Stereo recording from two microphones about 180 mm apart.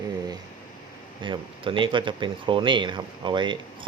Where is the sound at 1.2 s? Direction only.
30° right (ahead or behind).